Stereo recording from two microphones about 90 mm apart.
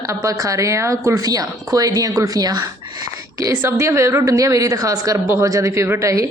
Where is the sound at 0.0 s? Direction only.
40° right (ahead or behind).